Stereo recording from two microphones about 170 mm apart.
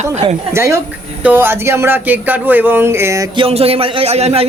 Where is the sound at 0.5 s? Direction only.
15° right (ahead or behind).